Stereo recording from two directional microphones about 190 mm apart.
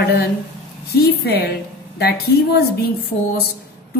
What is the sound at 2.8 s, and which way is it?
Speech, 55° left (ahead or behind).